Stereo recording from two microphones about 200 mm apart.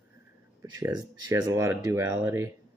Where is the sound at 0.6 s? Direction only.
20° right (ahead or behind).